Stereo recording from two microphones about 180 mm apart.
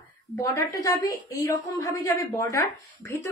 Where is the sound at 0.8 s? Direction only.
20° left (ahead or behind).